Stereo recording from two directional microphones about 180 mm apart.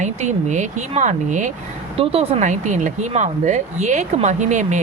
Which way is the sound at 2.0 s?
30° right (ahead or behind).